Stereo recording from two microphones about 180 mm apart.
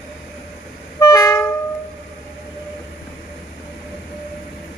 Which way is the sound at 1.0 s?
20° left (ahead or behind).